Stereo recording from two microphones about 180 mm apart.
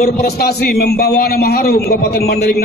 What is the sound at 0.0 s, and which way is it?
A man's voice, 60° left (ahead or behind).